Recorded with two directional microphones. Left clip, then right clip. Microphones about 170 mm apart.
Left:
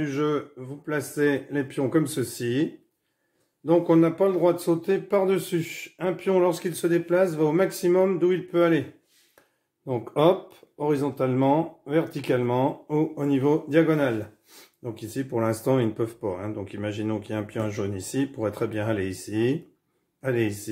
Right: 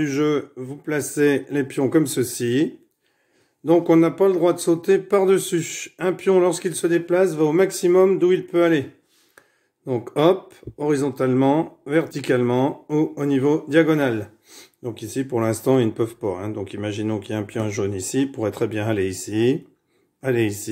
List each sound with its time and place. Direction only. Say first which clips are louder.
0.0 s speech: right 5 dB; 40° right (ahead or behind); by 8.8 s 25° right (ahead or behind)
9.8 s speech: right 3 dB; 20° right (ahead or behind)
17.7 s speech: right 5 dB; 35° right (ahead or behind)
20.2 s speech: right 4 dB; 20° right (ahead or behind)